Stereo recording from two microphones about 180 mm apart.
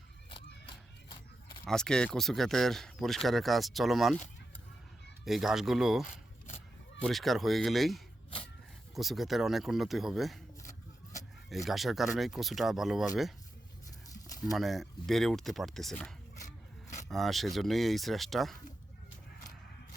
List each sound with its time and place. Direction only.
1.6 s speech: 5° left (ahead or behind)
5.2 s speech: centre (ahead or behind)
10.6 s a sound: 45° left (ahead or behind)
11.4 s speech: centre (ahead or behind)
14.5 s speech: centre (ahead or behind)